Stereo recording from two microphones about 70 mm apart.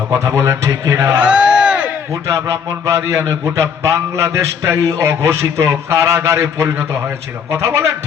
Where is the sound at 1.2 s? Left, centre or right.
Centre.